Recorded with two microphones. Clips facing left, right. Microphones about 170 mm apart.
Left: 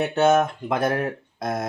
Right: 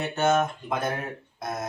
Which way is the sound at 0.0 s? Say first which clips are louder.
Left 5 dB; 65° left (ahead or behind).